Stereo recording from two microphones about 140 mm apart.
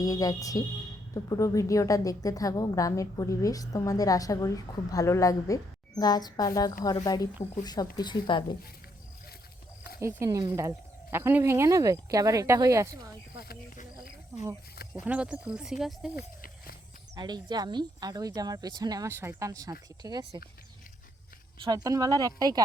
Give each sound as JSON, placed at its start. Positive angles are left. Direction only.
{"t": 0.0, "sound": "a woman's voice", "side_deg": 25}
{"t": 10.0, "sound": "speech", "side_deg": -20}
{"t": 13.4, "sound": "a sound", "side_deg": 90}
{"t": 14.3, "sound": "speech", "side_deg": -20}
{"t": 16.1, "sound": "a sound", "side_deg": 90}
{"t": 17.2, "sound": "speech", "side_deg": -30}
{"t": 21.6, "sound": "speech", "side_deg": -25}